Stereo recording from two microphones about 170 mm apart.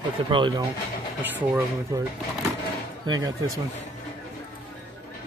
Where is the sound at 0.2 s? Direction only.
30° right (ahead or behind).